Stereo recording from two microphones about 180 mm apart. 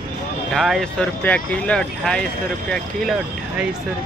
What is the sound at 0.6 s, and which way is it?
Speech, centre (ahead or behind).